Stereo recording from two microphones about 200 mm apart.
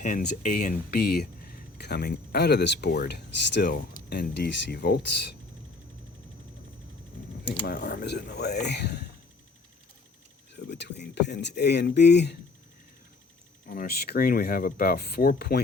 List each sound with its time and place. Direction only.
0.0 s speech: 40° left (ahead or behind); by 5.4 s 55° left (ahead or behind)
7.7 s speech: 45° left (ahead or behind)
10.5 s speech: 60° left (ahead or behind)
13.7 s speech: 50° left (ahead or behind)